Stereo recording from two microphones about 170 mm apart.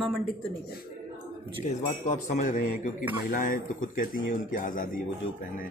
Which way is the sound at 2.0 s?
45° left (ahead or behind).